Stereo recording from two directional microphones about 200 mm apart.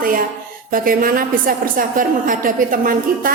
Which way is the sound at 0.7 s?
45° right (ahead or behind).